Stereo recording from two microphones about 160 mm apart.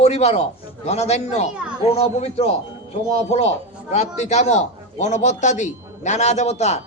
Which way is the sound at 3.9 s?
45° left (ahead or behind).